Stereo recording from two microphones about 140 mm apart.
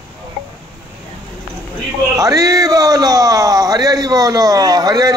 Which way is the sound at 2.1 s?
25° right (ahead or behind).